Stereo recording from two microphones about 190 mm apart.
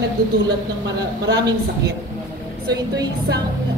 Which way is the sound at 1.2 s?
60° right (ahead or behind).